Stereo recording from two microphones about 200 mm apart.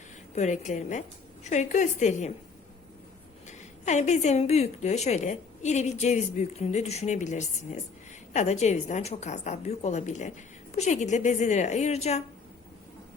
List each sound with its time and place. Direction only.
0.3 s a woman's voice: 35° left (ahead or behind)
3.4 s a woman's voice: 35° left (ahead or behind)